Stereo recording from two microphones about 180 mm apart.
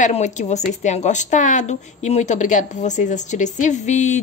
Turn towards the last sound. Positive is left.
turn(degrees=40)  # may be behind; listen again after turning